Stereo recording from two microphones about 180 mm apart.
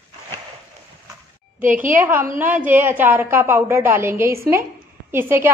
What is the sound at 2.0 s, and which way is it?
A woman's voice, 10° right (ahead or behind).